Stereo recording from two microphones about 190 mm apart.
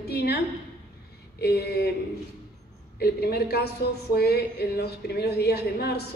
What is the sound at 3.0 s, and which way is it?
A woman's voice, 55° left (ahead or behind).